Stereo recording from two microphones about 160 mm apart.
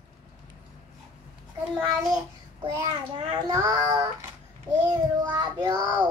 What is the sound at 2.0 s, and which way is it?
Child singing, 25° right (ahead or behind).